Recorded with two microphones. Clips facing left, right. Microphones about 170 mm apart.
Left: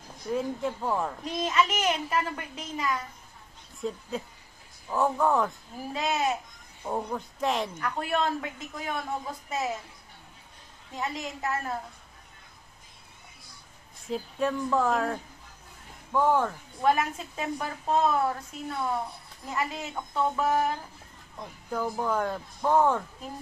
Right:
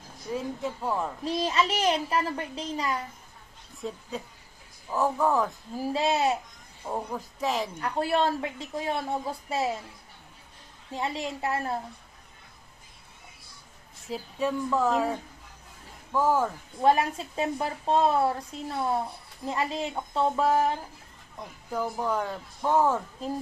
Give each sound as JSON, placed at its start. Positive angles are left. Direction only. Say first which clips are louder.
{"t": 0.3, "sound": "speech", "louder": "left 2 dB", "side_deg": 0}
{"t": 1.2, "sound": "speech", "louder": "right 2 dB", "side_deg": -30}
{"t": 3.8, "sound": "speech", "louder": "left 2 dB", "side_deg": 0}
{"t": 5.9, "sound": "speech", "louder": "right 3 dB", "side_deg": -30}
{"t": 6.9, "sound": "speech", "louder": "left 1 dB", "side_deg": 0}
{"t": 7.8, "sound": "speech", "louder": "right 3 dB", "side_deg": -30}
{"t": 10.9, "sound": "speech", "louder": "right 3 dB", "side_deg": -30}
{"t": 14.1, "sound": "speech", "louder": "left 1 dB", "side_deg": -5}
{"t": 16.1, "sound": "speech", "louder": "even", "side_deg": -5}
{"t": 16.8, "sound": "speech", "louder": "right 2 dB", "side_deg": -35}
{"t": 19.5, "sound": "speech", "louder": "right 3 dB", "side_deg": -30}
{"t": 21.7, "sound": "speech", "louder": "even", "side_deg": 0}